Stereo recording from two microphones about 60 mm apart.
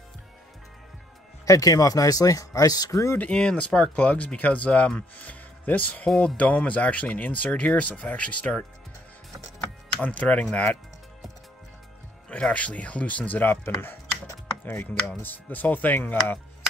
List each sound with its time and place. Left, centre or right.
1.4 s speech: left
3.2 s speech: centre
6.0 s speech: centre
6.3 s speech: left
10.0 s speech: left
12.3 s speech: centre
14.6 s chopping: left
15.2 s speech: left